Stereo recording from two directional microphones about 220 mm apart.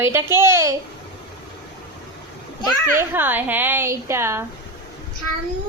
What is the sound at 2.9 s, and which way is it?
A woman's voice, 10° right (ahead or behind).